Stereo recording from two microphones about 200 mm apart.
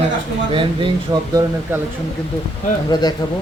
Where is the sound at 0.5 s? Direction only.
25° right (ahead or behind).